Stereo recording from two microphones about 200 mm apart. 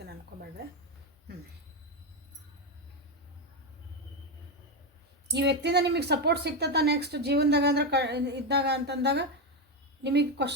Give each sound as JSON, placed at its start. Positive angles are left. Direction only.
{"t": 5.3, "sound": "a woman's voice", "side_deg": -60}